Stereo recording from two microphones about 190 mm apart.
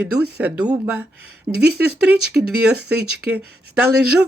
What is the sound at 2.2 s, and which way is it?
Speech, 5° right (ahead or behind).